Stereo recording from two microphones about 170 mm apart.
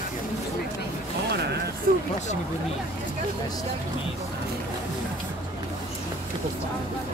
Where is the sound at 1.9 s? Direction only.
60° right (ahead or behind).